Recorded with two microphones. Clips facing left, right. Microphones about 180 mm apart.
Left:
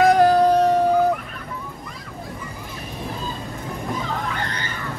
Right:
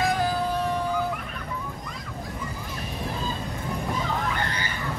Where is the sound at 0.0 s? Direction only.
70° left (ahead or behind).